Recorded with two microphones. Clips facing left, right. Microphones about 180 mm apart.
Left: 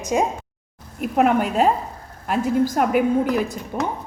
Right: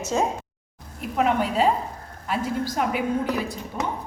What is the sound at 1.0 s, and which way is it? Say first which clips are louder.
A woman's voice: left 4 dB; 55° left (ahead or behind).